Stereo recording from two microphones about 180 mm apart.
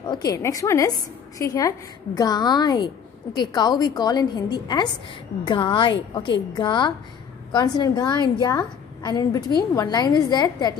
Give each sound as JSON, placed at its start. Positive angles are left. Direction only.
{"t": 0.1, "sound": "a woman's voice", "side_deg": 20}